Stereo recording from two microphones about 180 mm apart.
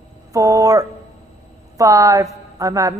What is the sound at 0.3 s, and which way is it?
A woman's voice, 15° right (ahead or behind).